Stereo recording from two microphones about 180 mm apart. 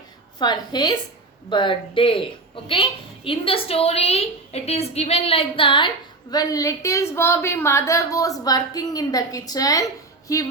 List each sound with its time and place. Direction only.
0.3 s a woman's voice: 25° left (ahead or behind)